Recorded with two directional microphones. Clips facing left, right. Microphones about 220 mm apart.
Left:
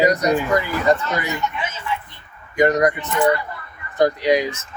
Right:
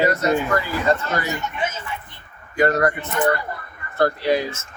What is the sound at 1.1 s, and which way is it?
Speech, 45° right (ahead or behind).